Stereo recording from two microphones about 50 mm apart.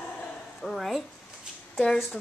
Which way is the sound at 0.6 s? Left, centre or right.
Centre.